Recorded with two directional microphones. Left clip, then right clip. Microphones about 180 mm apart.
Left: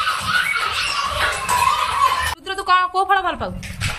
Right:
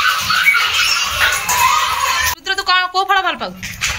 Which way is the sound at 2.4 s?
15° left (ahead or behind).